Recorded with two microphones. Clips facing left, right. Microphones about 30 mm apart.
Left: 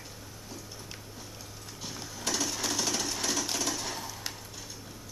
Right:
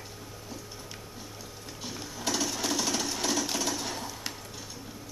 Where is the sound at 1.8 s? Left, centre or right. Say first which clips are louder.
Right 2 dB; centre.